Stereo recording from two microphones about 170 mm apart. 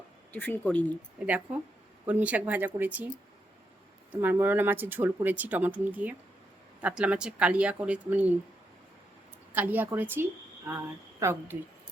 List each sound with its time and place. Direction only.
0.3 s speech: 10° left (ahead or behind)
1.2 s speech: 5° right (ahead or behind)
4.1 s speech: 10° right (ahead or behind)
9.5 s speech: 10° right (ahead or behind)